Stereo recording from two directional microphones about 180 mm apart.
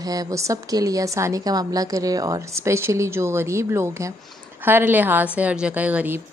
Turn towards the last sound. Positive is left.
turn(degrees=-10)  # may be behind; listen again after turning